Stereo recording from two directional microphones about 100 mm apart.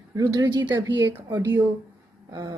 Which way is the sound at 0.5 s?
50° right (ahead or behind).